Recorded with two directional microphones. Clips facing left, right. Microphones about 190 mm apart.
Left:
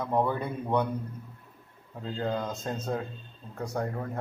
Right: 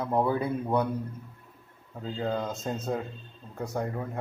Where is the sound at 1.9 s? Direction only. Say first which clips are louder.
Right 1 dB; centre (ahead or behind).